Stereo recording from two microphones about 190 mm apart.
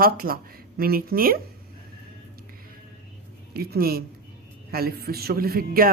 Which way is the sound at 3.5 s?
55° right (ahead or behind).